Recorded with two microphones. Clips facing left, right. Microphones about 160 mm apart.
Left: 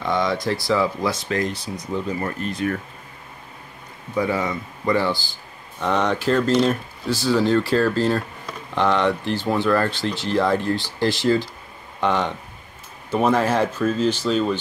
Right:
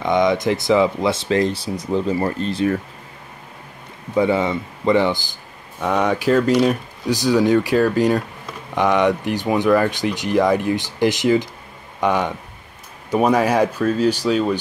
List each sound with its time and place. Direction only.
0.0 s speech: 20° right (ahead or behind)
4.1 s speech: 25° right (ahead or behind)